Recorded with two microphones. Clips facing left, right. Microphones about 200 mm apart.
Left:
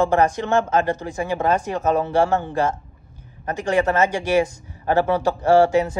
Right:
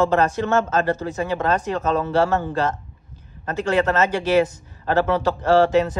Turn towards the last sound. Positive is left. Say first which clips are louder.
# left 1 dB
turn(degrees=10)  # may be behind; listen again after turning